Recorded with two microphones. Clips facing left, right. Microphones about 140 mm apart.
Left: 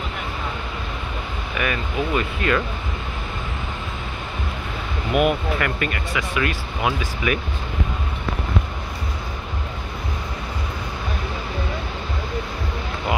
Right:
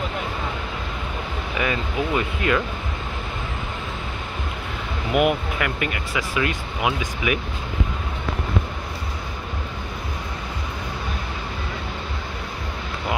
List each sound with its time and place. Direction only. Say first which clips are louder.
1.6 s speech: even; 20° right (ahead or behind)
5.1 s speech: left 1 dB; 20° right (ahead or behind)